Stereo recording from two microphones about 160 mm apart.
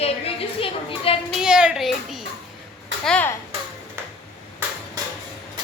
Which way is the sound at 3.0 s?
5° left (ahead or behind).